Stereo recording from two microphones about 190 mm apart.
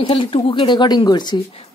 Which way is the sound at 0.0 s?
25° left (ahead or behind).